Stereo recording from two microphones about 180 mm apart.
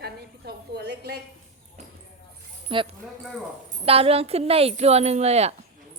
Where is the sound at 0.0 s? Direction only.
65° right (ahead or behind).